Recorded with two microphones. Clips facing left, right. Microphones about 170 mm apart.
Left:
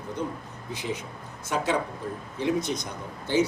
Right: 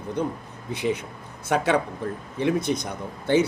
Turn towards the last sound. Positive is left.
turn(degrees=-60)  # may be behind; listen again after turning